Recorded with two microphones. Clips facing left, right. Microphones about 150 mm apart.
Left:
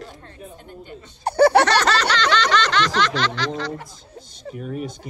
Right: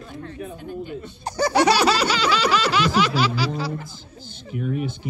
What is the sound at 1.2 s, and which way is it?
Speech, 60° left (ahead or behind).